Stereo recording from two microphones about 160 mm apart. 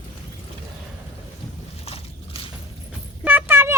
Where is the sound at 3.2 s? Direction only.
10° right (ahead or behind).